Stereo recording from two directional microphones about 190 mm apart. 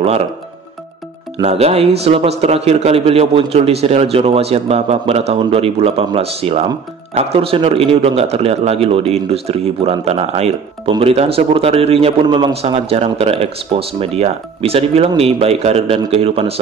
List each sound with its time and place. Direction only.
1.4 s a man's voice: 30° right (ahead or behind)